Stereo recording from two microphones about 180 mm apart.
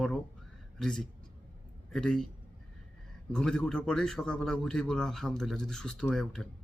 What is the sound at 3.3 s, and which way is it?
Speech, 5° left (ahead or behind).